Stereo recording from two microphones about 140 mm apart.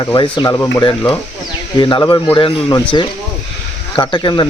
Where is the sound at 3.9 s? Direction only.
35° left (ahead or behind).